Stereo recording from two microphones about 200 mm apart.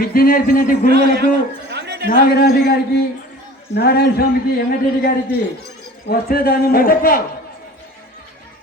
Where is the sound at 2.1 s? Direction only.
55° left (ahead or behind).